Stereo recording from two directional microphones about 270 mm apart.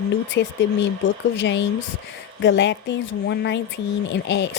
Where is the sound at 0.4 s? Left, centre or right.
Left.